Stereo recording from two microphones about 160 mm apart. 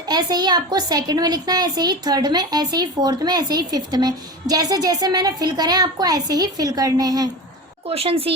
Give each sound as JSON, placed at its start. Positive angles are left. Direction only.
{"t": 0.1, "sound": "a woman's voice", "side_deg": -25}
{"t": 7.9, "sound": "speech", "side_deg": -35}